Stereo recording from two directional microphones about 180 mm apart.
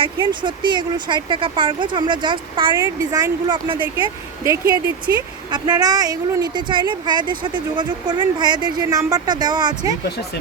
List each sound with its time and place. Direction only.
0.0 s a woman's voice: 25° right (ahead or behind)
2.7 s a woman's voice: 15° right (ahead or behind)